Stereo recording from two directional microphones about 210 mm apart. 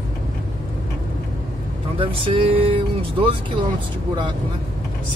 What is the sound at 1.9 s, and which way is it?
Speech, 25° right (ahead or behind).